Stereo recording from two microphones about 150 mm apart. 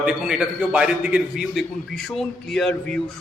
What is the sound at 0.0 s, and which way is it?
A man's voice, 5° right (ahead or behind).